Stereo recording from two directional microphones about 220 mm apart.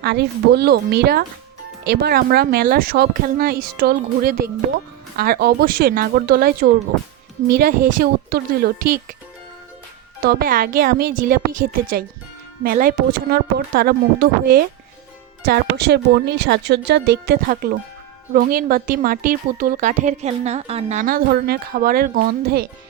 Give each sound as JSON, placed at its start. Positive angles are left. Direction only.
{"t": 0.0, "sound": "speech", "side_deg": -50}
{"t": 10.2, "sound": "speech", "side_deg": -45}